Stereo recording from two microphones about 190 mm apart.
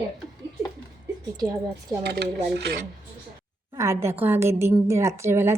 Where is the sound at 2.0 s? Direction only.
60° right (ahead or behind).